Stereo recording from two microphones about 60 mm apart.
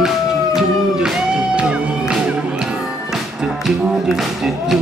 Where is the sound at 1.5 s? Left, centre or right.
Centre.